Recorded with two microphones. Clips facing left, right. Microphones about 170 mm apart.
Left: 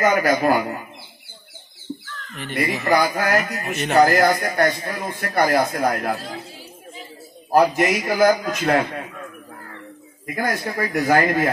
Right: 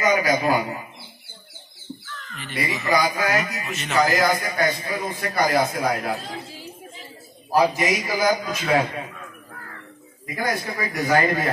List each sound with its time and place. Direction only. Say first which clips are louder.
0.0 s speech: left 2 dB; 55° left (ahead or behind)
2.3 s speech: left 4 dB; 55° left (ahead or behind)
7.5 s speech: left 3 dB; 60° left (ahead or behind)
10.2 s speech: left 2 dB; 60° left (ahead or behind)